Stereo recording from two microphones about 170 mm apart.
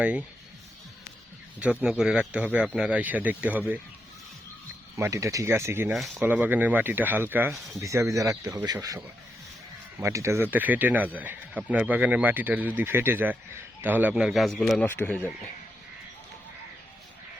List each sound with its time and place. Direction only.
0.0 s speech: 5° right (ahead or behind)
1.8 s speech: 5° right (ahead or behind)
4.9 s speech: 15° right (ahead or behind); by 15.3 s 10° left (ahead or behind)